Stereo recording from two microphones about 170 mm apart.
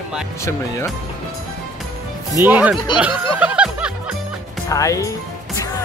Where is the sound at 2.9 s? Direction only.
5° right (ahead or behind).